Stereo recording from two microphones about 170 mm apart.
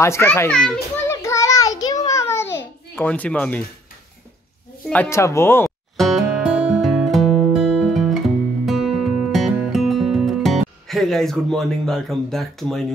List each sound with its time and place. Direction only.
0.0 s speech: 15° left (ahead or behind)
1.0 s a sound: 15° left (ahead or behind)
4.8 s speech: 5° left (ahead or behind)
5.1 s speech: 15° left (ahead or behind)
5.9 s music: centre (ahead or behind)
10.9 s speech: centre (ahead or behind)